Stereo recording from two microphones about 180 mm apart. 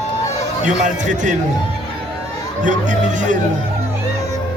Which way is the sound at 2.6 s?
45° right (ahead or behind).